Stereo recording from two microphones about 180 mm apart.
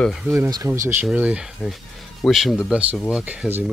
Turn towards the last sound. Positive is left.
turn(degrees=-10)  # may be behind; listen again after turning